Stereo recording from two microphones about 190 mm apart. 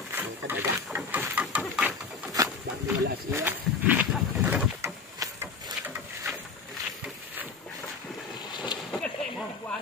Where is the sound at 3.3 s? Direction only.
10° right (ahead or behind).